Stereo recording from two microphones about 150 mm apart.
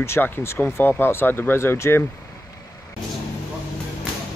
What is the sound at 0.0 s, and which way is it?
Speech, 15° left (ahead or behind).